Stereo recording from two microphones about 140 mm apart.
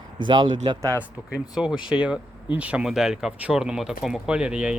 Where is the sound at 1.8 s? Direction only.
5° right (ahead or behind).